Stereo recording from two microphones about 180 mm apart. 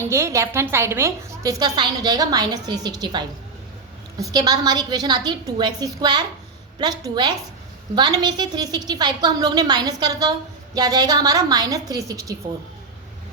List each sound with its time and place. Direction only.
0.1 s a woman's voice: 15° right (ahead or behind)